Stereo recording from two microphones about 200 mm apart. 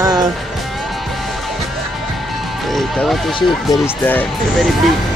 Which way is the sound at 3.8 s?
10° left (ahead or behind).